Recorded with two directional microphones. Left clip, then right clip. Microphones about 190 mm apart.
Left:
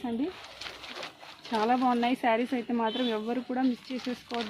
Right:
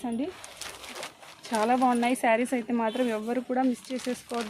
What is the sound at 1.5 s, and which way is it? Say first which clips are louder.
Speech: right 2 dB; 50° right (ahead or behind).